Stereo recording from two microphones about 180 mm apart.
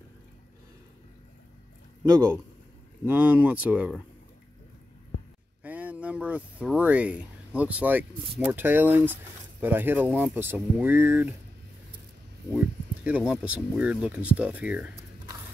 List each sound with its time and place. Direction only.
2.0 s a man's voice: 20° right (ahead or behind)
3.1 s speech: 10° right (ahead or behind)
5.6 s a sound: 10° right (ahead or behind)
8.3 s speech: 10° right (ahead or behind)
12.5 s speech: 10° right (ahead or behind)